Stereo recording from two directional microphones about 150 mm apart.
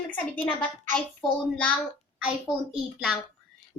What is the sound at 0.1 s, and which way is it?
Speech, 10° left (ahead or behind).